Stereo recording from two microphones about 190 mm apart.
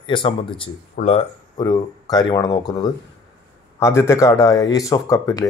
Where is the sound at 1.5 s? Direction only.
20° left (ahead or behind).